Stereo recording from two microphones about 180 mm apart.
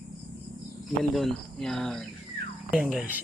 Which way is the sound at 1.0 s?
Centre (ahead or behind).